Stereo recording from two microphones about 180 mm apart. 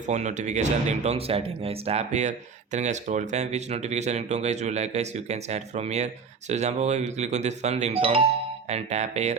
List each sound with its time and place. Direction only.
0.1 s speech: 40° right (ahead or behind)